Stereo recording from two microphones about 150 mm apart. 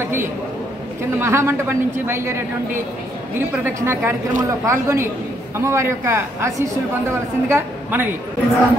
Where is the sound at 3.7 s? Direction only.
15° right (ahead or behind).